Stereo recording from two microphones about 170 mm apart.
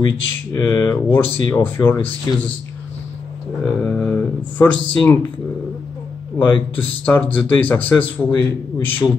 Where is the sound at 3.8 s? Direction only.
10° left (ahead or behind).